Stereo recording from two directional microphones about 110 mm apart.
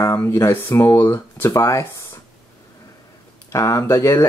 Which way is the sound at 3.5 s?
25° left (ahead or behind).